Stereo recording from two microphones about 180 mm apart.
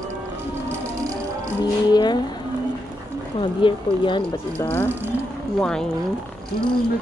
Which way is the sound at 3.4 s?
30° left (ahead or behind).